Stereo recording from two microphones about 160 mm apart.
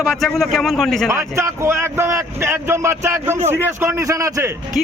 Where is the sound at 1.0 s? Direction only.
15° right (ahead or behind).